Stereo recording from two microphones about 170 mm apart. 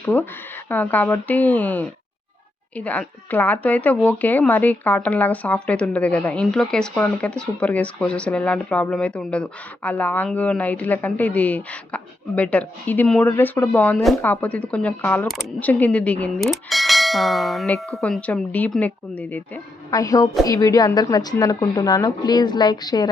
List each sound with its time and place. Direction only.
0.0 s speech: 10° left (ahead or behind)
19.9 s speech: 20° left (ahead or behind)